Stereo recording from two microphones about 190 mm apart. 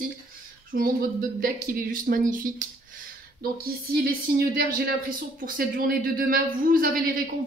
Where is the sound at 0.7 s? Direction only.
45° right (ahead or behind).